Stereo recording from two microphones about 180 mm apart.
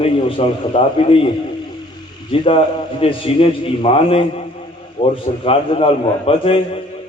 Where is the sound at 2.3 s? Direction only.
30° left (ahead or behind).